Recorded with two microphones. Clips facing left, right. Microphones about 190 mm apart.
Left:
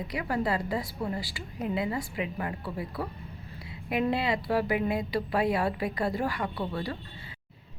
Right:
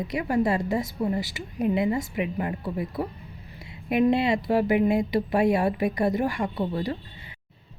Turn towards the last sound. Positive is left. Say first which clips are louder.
# right 5 dB
turn(degrees=-20)  # may be behind; listen again after turning